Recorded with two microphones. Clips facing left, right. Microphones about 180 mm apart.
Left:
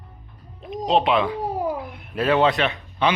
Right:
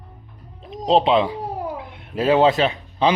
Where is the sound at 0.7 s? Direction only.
30° right (ahead or behind).